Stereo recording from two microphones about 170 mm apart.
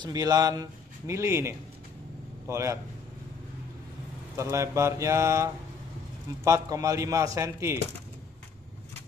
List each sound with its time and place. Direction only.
0.0 s speech: 20° right (ahead or behind)
2.4 s mantra: 15° right (ahead or behind)
4.4 s mantra: 15° right (ahead or behind)
6.4 s speech: 20° right (ahead or behind)